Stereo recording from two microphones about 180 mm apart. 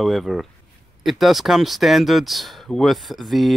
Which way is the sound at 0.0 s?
Centre (ahead or behind).